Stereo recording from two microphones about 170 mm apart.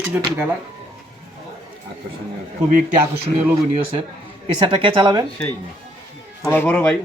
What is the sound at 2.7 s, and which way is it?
Speech, 55° right (ahead or behind).